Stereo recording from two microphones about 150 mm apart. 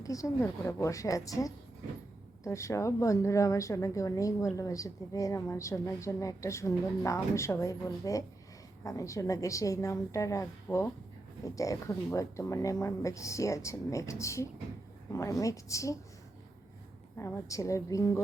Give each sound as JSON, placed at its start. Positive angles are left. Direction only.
{"t": 0.0, "sound": "a woman's voice", "side_deg": 20}
{"t": 17.2, "sound": "a woman's voice", "side_deg": 20}